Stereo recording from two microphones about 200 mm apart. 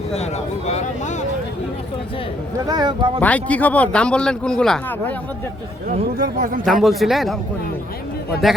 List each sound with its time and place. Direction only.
0.1 s speech: 35° left (ahead or behind)
2.6 s speech: 20° right (ahead or behind)
3.2 s a man's voice: 5° left (ahead or behind)
5.9 s speech: 45° right (ahead or behind)
6.8 s a man's voice: centre (ahead or behind)
8.4 s a man's voice: centre (ahead or behind)